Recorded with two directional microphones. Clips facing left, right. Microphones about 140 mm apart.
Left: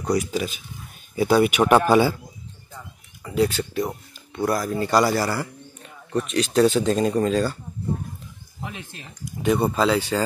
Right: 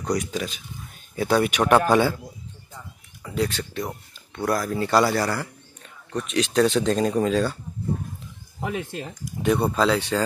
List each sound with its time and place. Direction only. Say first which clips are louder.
0.0 s a man's voice: left 3 dB; 5° left (ahead or behind)
3.3 s a man's voice: left 4 dB; 5° left (ahead or behind)
8.5 s speech: right 8 dB; 55° right (ahead or behind)
9.4 s a man's voice: left 1 dB; centre (ahead or behind)